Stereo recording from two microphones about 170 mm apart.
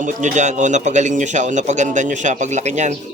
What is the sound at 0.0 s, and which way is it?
A man's voice, 45° right (ahead or behind).